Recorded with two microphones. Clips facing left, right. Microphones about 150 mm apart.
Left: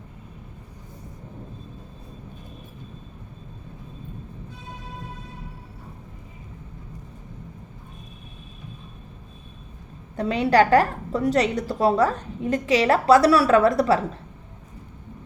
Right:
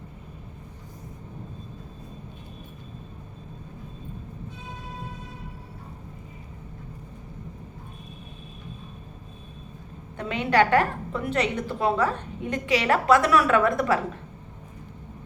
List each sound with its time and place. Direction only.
10.2 s a woman's voice: 35° left (ahead or behind)